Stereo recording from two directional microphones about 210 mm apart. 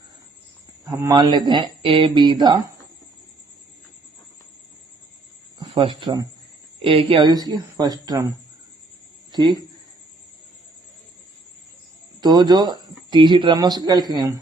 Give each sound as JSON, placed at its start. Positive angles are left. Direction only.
{"t": 0.9, "sound": "speech", "side_deg": -15}
{"t": 5.5, "sound": "speech", "side_deg": -25}
{"t": 9.3, "sound": "speech", "side_deg": -20}
{"t": 12.2, "sound": "speech", "side_deg": -20}